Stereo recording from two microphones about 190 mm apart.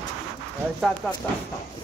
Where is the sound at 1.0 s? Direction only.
5° right (ahead or behind).